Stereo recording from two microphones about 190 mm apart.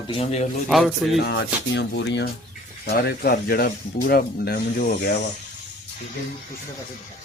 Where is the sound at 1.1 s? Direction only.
65° left (ahead or behind).